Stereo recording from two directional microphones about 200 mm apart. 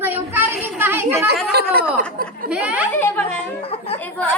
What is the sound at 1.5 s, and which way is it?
Speech, 55° right (ahead or behind).